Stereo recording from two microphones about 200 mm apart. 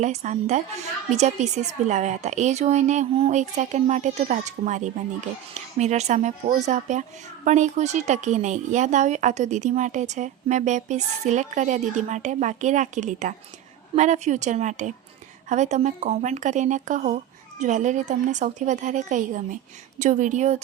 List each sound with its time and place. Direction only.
0.0 s a woman's voice: 35° right (ahead or behind)